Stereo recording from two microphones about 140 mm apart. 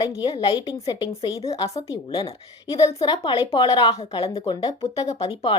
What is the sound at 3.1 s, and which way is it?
A woman's voice, 35° left (ahead or behind).